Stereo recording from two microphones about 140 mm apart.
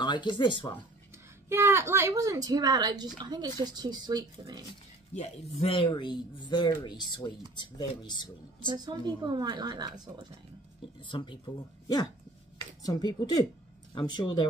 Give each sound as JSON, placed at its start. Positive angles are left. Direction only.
{"t": 0.0, "sound": "speech", "side_deg": 35}
{"t": 1.5, "sound": "a woman's voice", "side_deg": -20}
{"t": 5.6, "sound": "speech", "side_deg": 40}
{"t": 8.6, "sound": "speech", "side_deg": -30}
{"t": 11.1, "sound": "speech", "side_deg": 35}